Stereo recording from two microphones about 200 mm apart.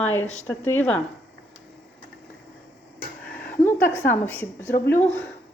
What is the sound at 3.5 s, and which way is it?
A woman's voice, 10° left (ahead or behind).